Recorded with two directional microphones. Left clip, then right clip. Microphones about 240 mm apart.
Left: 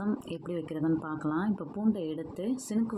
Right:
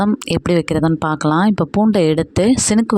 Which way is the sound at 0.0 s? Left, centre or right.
Right.